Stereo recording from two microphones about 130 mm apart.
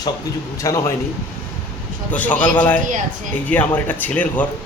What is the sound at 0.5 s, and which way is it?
Speech, 25° left (ahead or behind).